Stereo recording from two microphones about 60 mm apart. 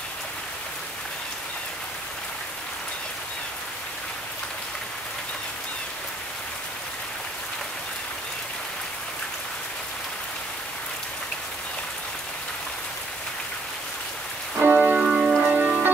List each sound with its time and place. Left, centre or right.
14.6 s music: right
15.0 s rain on surface: centre
15.4 s music: right